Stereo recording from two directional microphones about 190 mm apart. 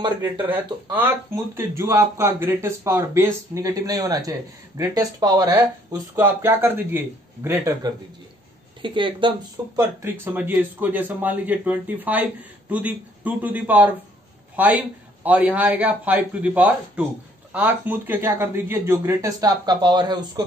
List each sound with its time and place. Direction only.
0.2 s speech: 10° right (ahead or behind)
8.8 s speech: 25° right (ahead or behind)
9.8 s speech: 10° right (ahead or behind)